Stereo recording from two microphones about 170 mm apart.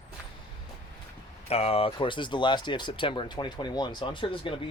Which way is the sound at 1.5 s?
35° left (ahead or behind).